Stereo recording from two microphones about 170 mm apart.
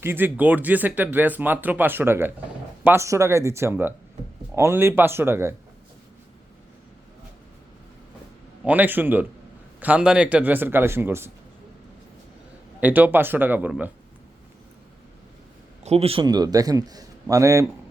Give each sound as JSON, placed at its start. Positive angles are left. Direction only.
{"t": 0.0, "sound": "speech", "side_deg": -10}
{"t": 8.6, "sound": "speech", "side_deg": -10}
{"t": 12.8, "sound": "speech", "side_deg": -10}
{"t": 15.8, "sound": "a man's voice", "side_deg": -40}